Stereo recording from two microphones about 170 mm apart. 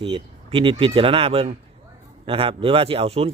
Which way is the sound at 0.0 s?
30° right (ahead or behind).